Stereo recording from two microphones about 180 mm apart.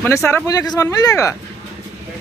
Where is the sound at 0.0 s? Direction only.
15° left (ahead or behind).